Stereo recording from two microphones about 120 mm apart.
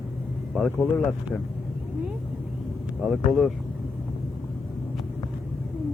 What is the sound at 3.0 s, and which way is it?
Speech, centre (ahead or behind).